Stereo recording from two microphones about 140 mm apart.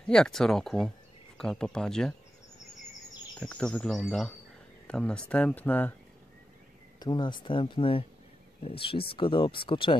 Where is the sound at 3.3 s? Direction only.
10° left (ahead or behind).